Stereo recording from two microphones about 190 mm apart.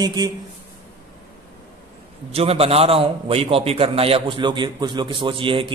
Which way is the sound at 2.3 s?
30° right (ahead or behind).